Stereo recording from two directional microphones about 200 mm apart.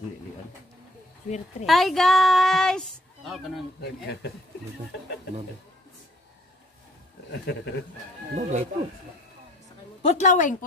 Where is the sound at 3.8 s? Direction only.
55° left (ahead or behind).